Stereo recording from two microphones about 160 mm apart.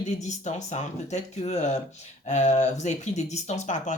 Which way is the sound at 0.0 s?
45° left (ahead or behind).